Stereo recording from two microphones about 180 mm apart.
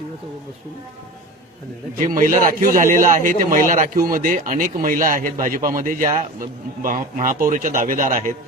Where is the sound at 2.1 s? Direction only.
50° right (ahead or behind).